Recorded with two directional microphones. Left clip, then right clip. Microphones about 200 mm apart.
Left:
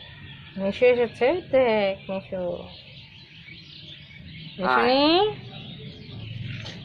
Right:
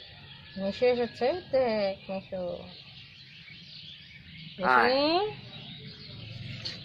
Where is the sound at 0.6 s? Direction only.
10° left (ahead or behind).